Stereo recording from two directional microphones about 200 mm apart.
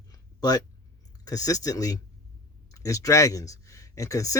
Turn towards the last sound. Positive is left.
turn(degrees=15)  # may be behind; listen again after turning